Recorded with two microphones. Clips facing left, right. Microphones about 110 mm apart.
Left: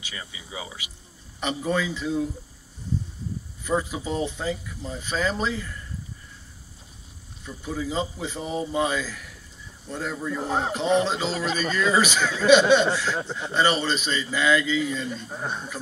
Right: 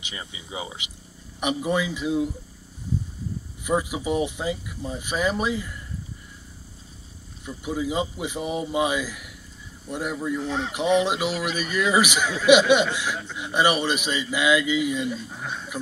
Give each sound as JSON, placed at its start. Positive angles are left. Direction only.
{"t": 0.0, "sound": "speech", "side_deg": -25}
{"t": 1.4, "sound": "speech", "side_deg": -10}
{"t": 3.6, "sound": "speech", "side_deg": -10}
{"t": 7.4, "sound": "speech", "side_deg": -15}
{"t": 10.3, "sound": "speech", "side_deg": 40}
{"t": 11.1, "sound": "speech", "side_deg": -15}
{"t": 15.4, "sound": "speech", "side_deg": 35}